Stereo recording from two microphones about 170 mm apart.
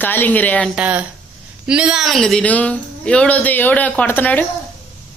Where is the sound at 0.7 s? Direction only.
10° right (ahead or behind); by 4.5 s 10° left (ahead or behind).